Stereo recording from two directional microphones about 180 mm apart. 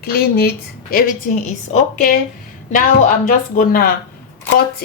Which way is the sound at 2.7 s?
50° left (ahead or behind).